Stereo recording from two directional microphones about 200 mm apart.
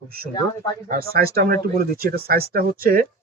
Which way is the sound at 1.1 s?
50° right (ahead or behind).